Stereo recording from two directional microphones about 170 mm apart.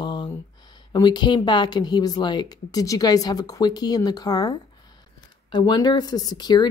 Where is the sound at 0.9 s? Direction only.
25° left (ahead or behind).